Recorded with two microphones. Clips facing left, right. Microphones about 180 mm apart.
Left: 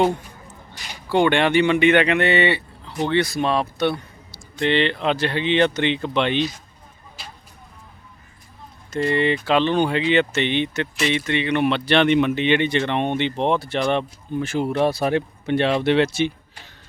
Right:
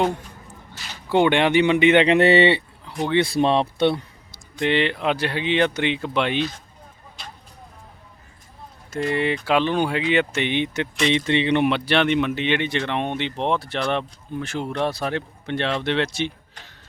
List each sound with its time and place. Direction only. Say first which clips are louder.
0.7 s a sound: left 1 dB; 15° left (ahead or behind)
1.1 s speech: even; 15° right (ahead or behind)
2.1 s speech: right 4 dB; 35° right (ahead or behind)
4.5 s speech: left 1 dB; 10° right (ahead or behind)
7.2 s vehicle: right 1 dB; 5° left (ahead or behind)
8.9 s speech: left 3 dB; 5° right (ahead or behind)
11.3 s speech: even; 25° right (ahead or behind)
11.9 s speech: left 3 dB; centre (ahead or behind)